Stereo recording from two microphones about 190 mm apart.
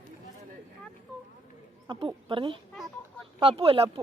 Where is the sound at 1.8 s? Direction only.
25° right (ahead or behind).